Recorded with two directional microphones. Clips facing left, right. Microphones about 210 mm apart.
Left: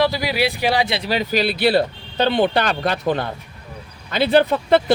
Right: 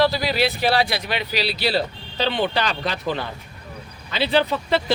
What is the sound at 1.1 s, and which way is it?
Speech, 45° left (ahead or behind).